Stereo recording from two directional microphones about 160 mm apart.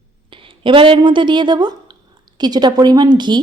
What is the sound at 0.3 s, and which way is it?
Speech, 35° right (ahead or behind).